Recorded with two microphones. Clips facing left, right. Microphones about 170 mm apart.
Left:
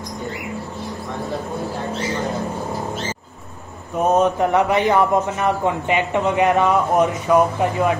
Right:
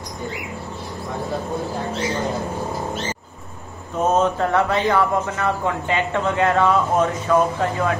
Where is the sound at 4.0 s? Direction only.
15° left (ahead or behind).